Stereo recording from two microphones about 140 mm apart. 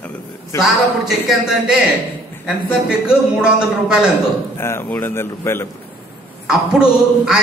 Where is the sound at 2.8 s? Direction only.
5° right (ahead or behind).